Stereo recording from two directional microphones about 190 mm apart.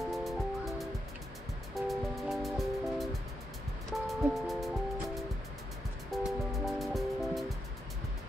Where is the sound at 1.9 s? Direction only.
Centre (ahead or behind).